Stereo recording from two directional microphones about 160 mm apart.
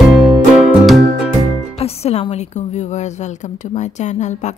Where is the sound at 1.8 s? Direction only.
40° left (ahead or behind).